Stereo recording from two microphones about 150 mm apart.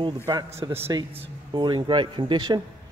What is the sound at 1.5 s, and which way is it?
Speech, 30° right (ahead or behind).